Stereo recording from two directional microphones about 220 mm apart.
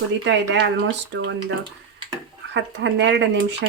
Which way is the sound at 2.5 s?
55° right (ahead or behind).